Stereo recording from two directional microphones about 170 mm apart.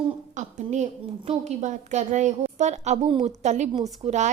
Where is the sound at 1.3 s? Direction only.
40° right (ahead or behind).